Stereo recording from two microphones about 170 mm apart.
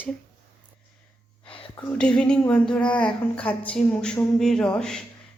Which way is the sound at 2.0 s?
5° left (ahead or behind).